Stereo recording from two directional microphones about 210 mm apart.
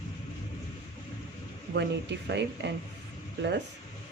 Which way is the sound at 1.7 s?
55° right (ahead or behind).